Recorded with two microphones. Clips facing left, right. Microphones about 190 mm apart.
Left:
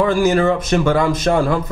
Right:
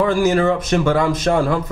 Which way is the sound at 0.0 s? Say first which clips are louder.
Left 1 dB; 10° left (ahead or behind).